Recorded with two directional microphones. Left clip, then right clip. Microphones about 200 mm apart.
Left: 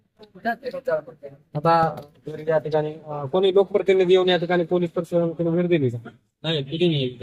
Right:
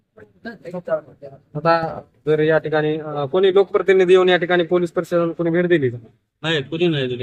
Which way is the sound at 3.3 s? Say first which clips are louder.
Right 3 dB; 20° left (ahead or behind).